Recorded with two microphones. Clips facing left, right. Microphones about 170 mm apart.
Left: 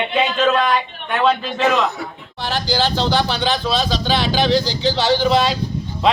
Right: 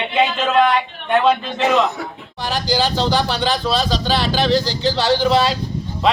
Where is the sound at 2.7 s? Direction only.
10° right (ahead or behind).